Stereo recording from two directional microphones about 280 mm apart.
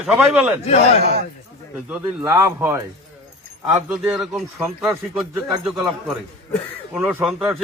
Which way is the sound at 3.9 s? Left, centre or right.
Centre.